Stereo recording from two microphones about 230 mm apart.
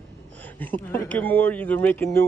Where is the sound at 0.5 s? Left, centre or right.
Centre.